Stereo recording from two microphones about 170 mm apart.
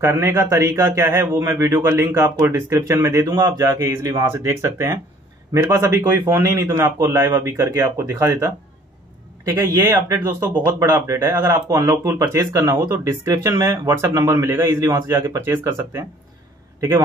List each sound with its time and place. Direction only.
0.0 s a man's voice: 15° right (ahead or behind)